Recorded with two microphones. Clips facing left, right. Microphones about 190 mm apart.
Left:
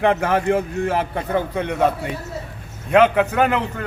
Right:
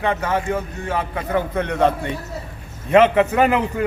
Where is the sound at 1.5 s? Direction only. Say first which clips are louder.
Right 3 dB; 10° left (ahead or behind).